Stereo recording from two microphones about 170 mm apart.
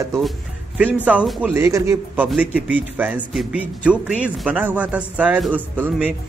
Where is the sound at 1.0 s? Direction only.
5° right (ahead or behind).